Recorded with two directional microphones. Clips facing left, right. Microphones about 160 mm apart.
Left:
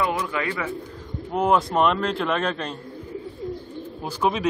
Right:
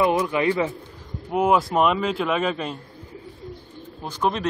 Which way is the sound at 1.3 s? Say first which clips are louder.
Right 1 dB; 5° right (ahead or behind).